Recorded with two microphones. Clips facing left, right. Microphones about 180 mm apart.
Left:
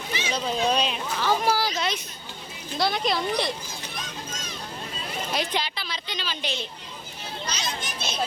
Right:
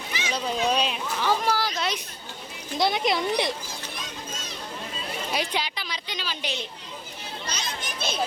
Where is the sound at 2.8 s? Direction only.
20° right (ahead or behind).